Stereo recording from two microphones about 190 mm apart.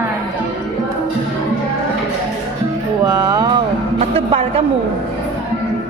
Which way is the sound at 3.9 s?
30° right (ahead or behind).